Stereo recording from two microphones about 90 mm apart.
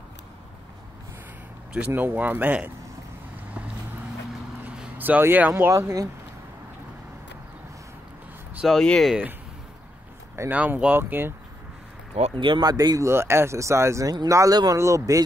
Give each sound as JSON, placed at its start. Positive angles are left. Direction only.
{"t": 1.9, "sound": "speech", "side_deg": -20}
{"t": 4.6, "sound": "vehicle", "side_deg": -20}
{"t": 5.7, "sound": "speech", "side_deg": -35}
{"t": 8.6, "sound": "speech", "side_deg": 5}
{"t": 10.5, "sound": "speech", "side_deg": -15}
{"t": 12.4, "sound": "speech", "side_deg": -60}
{"t": 12.7, "sound": "speech", "side_deg": -40}
{"t": 13.1, "sound": "speech", "side_deg": -30}